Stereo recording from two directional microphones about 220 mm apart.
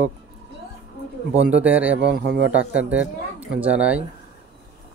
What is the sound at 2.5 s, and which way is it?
Speech, 5° right (ahead or behind).